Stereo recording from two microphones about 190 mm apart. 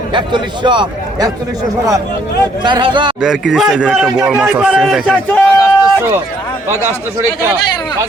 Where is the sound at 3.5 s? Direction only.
5° right (ahead or behind).